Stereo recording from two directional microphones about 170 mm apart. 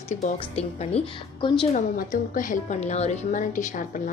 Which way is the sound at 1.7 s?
50° left (ahead or behind).